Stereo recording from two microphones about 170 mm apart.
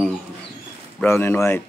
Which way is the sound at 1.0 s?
15° left (ahead or behind).